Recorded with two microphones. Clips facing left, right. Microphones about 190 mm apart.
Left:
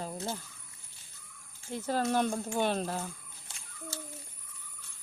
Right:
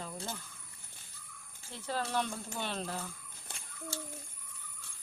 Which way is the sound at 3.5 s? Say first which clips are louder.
Right 4 dB; 55° right (ahead or behind).